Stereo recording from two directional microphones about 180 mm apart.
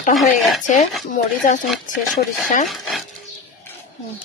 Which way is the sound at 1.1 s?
45° left (ahead or behind).